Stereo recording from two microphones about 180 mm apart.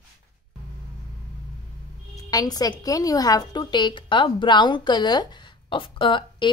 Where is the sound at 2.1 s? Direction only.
20° left (ahead or behind).